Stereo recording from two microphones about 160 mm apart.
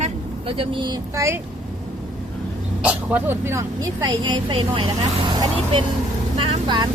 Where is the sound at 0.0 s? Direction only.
35° right (ahead or behind).